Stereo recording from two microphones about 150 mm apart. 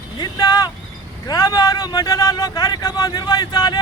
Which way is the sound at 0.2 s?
25° left (ahead or behind).